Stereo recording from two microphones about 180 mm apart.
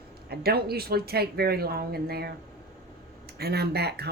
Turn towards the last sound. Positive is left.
turn(degrees=-65)  # may be behind; listen again after turning